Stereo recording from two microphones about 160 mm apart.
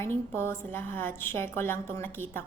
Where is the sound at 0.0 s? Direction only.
15° left (ahead or behind).